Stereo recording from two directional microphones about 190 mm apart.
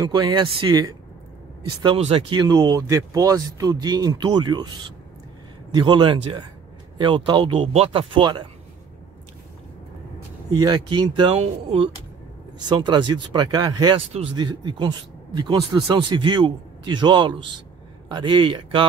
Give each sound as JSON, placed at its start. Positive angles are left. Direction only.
{"t": 0.0, "sound": "speech", "side_deg": -25}
{"t": 5.7, "sound": "speech", "side_deg": -25}
{"t": 10.5, "sound": "speech", "side_deg": -20}